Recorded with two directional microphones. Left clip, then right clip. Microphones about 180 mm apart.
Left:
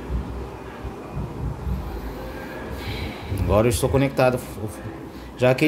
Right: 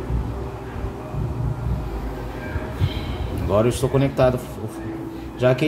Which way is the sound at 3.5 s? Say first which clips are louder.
Even; 25° left (ahead or behind).